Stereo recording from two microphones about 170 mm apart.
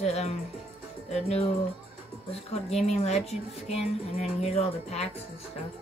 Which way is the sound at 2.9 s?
40° left (ahead or behind).